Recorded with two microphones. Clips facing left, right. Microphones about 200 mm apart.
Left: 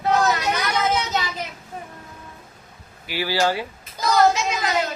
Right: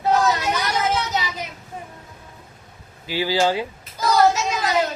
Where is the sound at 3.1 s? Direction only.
20° right (ahead or behind).